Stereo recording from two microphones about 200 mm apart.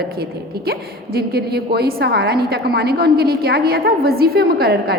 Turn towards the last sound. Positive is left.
turn(degrees=-50)  # may be behind; listen again after turning